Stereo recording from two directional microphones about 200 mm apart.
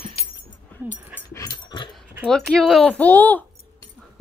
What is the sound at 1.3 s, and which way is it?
Dog, 20° left (ahead or behind).